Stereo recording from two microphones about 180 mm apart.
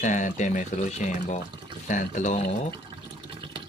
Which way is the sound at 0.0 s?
45° left (ahead or behind).